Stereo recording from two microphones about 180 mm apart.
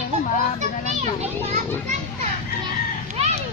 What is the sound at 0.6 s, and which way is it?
Children playing, 40° right (ahead or behind).